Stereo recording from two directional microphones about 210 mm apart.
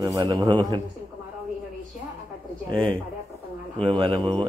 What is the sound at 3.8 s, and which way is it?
Speech, 25° right (ahead or behind).